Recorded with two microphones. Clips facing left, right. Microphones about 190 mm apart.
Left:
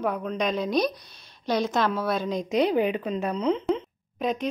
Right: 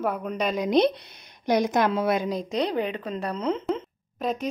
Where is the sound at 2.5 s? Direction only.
5° left (ahead or behind).